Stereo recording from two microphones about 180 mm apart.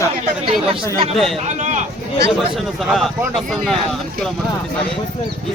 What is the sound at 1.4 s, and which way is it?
Speech, 40° right (ahead or behind).